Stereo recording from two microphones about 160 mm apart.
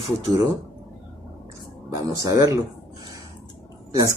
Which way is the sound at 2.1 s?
20° right (ahead or behind).